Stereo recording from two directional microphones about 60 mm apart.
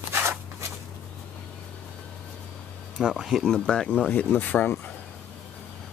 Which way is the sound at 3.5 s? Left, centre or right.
Centre.